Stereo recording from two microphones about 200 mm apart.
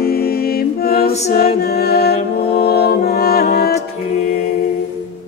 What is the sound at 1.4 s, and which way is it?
Music, 50° left (ahead or behind).